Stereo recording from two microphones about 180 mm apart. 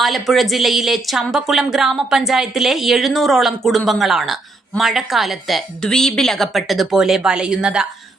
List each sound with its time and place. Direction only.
0.0 s speech: centre (ahead or behind)